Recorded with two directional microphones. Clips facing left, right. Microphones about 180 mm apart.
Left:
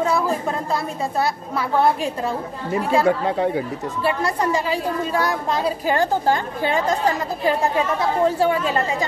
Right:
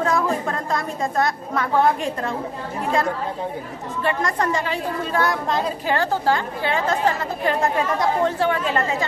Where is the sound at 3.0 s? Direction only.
75° left (ahead or behind).